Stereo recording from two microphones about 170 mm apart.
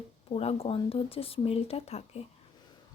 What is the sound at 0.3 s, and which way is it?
A woman's voice, 35° left (ahead or behind).